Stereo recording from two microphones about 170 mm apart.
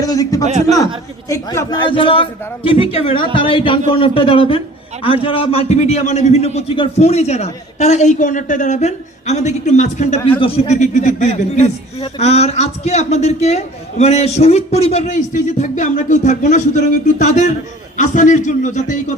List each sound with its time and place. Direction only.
0.0 s a man's voice: 20° left (ahead or behind); by 19.1 s 45° left (ahead or behind)